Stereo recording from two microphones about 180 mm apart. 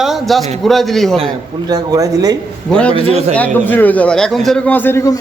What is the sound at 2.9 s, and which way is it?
Speech, 35° right (ahead or behind).